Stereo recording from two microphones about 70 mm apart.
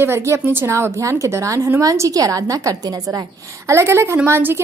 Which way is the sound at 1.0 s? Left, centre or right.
Right.